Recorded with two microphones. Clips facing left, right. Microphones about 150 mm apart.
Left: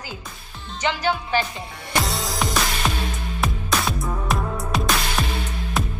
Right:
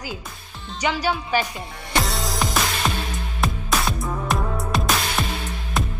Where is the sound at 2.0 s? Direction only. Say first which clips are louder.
Even; centre (ahead or behind).